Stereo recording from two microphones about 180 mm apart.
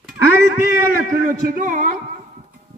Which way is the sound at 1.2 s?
45° right (ahead or behind).